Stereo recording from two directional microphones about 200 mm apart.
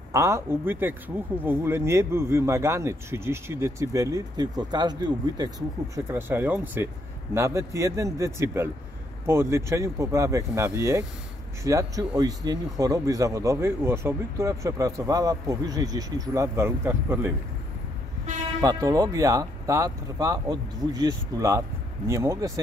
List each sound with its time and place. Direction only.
0.1 s speech: 15° right (ahead or behind)
18.6 s speech: 15° right (ahead or behind)